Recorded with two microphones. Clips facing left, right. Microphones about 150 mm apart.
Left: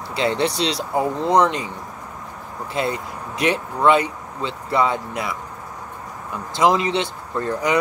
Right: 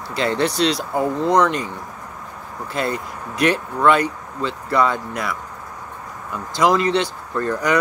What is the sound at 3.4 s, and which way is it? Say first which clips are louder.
Speech: right 1 dB; 20° left (ahead or behind).